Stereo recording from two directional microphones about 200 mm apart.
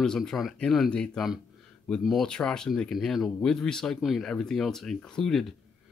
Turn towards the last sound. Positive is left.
turn(degrees=0)  # may be behind; listen again after turning